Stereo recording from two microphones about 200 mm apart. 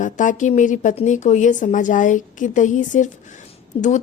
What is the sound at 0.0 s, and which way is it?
A woman's voice, 40° left (ahead or behind).